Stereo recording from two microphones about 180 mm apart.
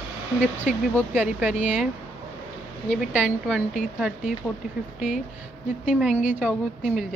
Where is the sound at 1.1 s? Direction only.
10° right (ahead or behind).